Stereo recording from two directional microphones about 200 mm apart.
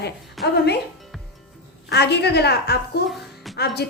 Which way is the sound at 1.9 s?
55° left (ahead or behind).